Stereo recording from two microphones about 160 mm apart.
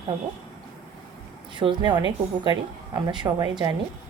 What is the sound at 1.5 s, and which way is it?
A woman's voice, 30° right (ahead or behind).